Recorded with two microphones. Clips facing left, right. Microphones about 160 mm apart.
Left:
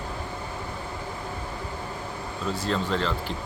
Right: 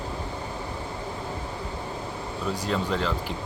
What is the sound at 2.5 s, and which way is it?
Speech, 10° right (ahead or behind).